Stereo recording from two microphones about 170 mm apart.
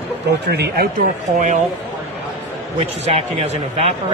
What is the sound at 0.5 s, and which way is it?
Speech, 75° right (ahead or behind).